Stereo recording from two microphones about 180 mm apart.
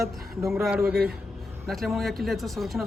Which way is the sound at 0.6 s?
5° right (ahead or behind).